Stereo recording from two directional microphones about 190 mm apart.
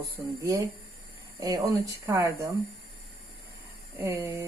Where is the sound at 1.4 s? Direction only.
20° right (ahead or behind).